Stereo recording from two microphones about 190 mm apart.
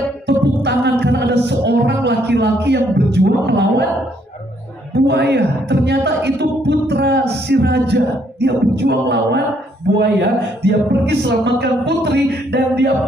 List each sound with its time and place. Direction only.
0.3 s a sound: 60° right (ahead or behind)
4.9 s a man's voice: 60° right (ahead or behind)
10.6 s music: 60° right (ahead or behind)